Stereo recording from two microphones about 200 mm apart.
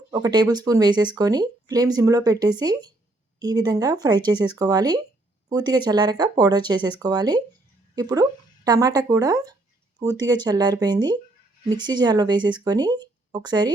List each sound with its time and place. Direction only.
0.1 s speech: 20° right (ahead or behind)